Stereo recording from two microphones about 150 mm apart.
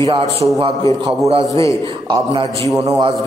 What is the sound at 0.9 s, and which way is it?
Speech, 25° left (ahead or behind).